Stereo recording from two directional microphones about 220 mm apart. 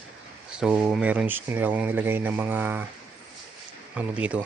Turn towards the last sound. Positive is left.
turn(degrees=-5)  # may be behind; listen again after turning